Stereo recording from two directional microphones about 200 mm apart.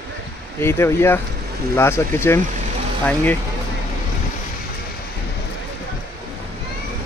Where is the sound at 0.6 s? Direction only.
10° left (ahead or behind).